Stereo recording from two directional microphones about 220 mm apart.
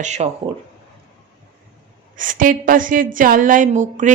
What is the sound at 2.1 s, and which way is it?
A woman's voice, 35° right (ahead or behind).